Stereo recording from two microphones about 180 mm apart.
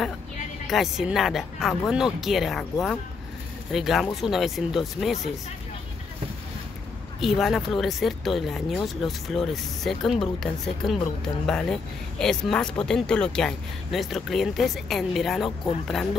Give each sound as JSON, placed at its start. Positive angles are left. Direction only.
{"t": 0.7, "sound": "speech", "side_deg": 0}
{"t": 7.2, "sound": "speech", "side_deg": 0}